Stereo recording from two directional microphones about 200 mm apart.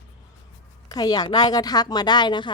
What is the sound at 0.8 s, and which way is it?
Speech, 20° left (ahead or behind).